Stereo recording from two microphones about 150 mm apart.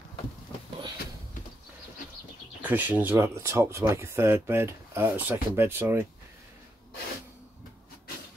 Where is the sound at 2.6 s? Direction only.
10° right (ahead or behind).